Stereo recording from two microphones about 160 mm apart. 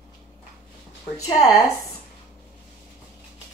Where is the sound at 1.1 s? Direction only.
20° left (ahead or behind).